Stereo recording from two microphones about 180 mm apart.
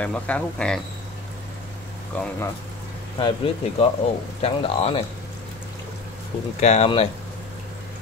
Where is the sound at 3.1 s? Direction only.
30° left (ahead or behind).